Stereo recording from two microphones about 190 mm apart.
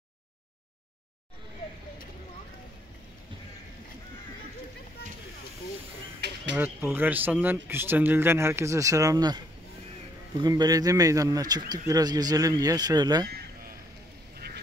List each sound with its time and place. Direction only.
6.5 s speech: 10° right (ahead or behind)